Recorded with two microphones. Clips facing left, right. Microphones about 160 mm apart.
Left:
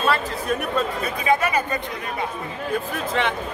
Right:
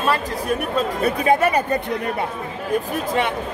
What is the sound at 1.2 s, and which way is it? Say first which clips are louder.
Speech: right 2 dB; 35° right (ahead or behind).